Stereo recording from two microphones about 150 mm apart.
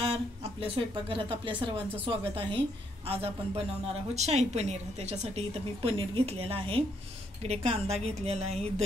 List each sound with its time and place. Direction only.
0.0 s a woman's voice: 35° right (ahead or behind)